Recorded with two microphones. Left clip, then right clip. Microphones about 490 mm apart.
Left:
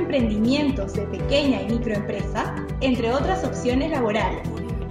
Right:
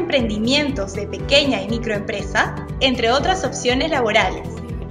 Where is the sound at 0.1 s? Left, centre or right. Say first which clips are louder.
Right 7 dB; centre.